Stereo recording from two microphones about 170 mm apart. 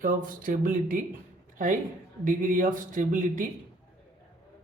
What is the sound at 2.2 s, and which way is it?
Speech, 50° right (ahead or behind).